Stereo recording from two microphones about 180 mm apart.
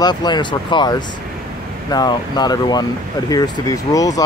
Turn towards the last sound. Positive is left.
turn(degrees=20)  # may be behind; listen again after turning